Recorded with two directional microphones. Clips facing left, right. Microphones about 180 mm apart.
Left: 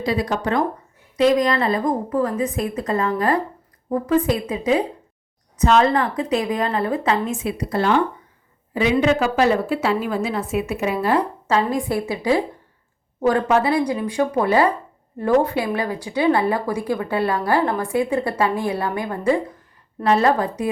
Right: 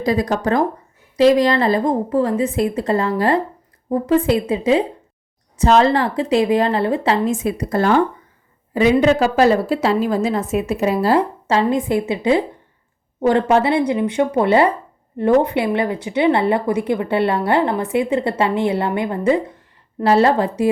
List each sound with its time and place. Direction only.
0.0 s a woman's voice: 40° right (ahead or behind)
7.4 s a woman's voice: 45° right (ahead or behind); by 20.7 s 30° right (ahead or behind)